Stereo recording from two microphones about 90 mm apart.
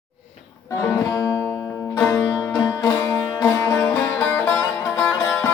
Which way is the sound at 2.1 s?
35° left (ahead or behind).